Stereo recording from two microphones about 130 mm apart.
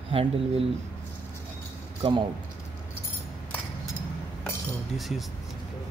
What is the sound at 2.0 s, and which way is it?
Speech, 40° right (ahead or behind).